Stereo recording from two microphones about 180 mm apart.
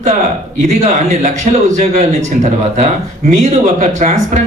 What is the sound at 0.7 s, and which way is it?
Speech, 40° right (ahead or behind).